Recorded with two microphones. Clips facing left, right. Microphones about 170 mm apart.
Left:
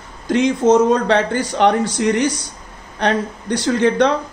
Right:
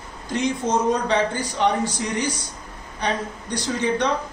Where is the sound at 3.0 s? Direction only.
80° left.